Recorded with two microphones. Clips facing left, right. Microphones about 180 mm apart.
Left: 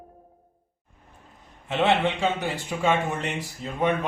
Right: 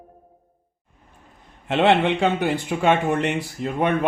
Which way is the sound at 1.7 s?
65° right (ahead or behind).